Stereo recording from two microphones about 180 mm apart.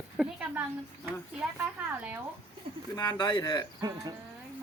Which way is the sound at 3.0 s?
25° left (ahead or behind).